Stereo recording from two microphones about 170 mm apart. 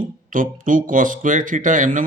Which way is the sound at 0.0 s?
50° right (ahead or behind).